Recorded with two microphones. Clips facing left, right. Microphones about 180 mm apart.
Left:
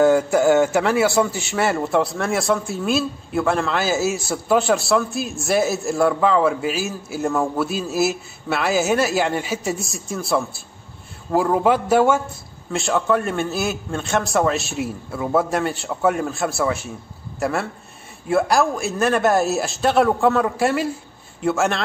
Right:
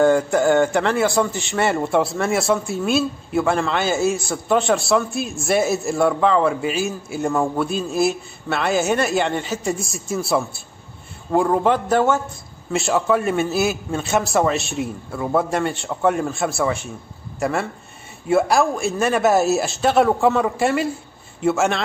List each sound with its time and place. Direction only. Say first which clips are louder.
0.0 s a man's voice: left 1 dB; 5° left (ahead or behind)
12.7 s a man's voice: right 1 dB; centre (ahead or behind)